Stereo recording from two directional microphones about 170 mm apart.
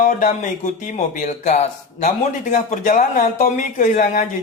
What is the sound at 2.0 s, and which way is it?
Speech, 45° left (ahead or behind).